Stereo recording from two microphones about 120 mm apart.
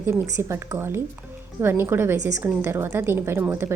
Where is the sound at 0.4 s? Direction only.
25° right (ahead or behind).